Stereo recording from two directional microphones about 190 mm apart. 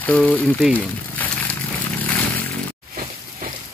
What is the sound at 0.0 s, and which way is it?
Speech, 5° left (ahead or behind).